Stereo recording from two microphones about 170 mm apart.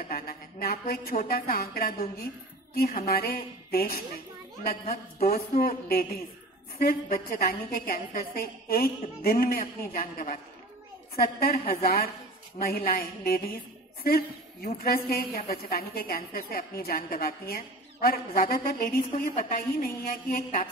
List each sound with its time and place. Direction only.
0.1 s a sound: 60° left (ahead or behind)
2.7 s music: 65° left (ahead or behind)
3.1 s a woman's voice: 65° left (ahead or behind)